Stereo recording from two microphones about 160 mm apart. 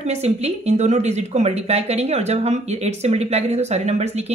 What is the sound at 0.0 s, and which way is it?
A woman's voice, 40° right (ahead or behind).